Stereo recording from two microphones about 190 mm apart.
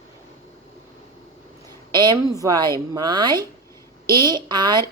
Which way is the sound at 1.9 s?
20° right (ahead or behind).